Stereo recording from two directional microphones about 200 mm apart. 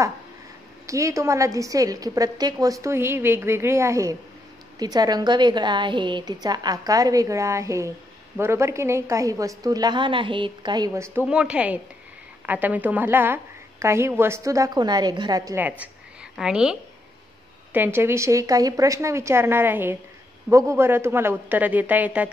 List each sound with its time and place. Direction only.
0.8 s a woman's voice: 15° right (ahead or behind)
15.8 s a sound: 5° right (ahead or behind)
17.7 s a woman's voice: 10° right (ahead or behind)